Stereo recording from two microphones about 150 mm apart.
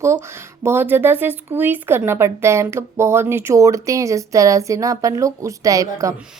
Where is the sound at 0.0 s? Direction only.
20° right (ahead or behind).